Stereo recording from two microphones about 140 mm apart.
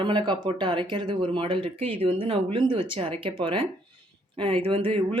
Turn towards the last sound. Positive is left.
turn(degrees=-40)  # may be behind; listen again after turning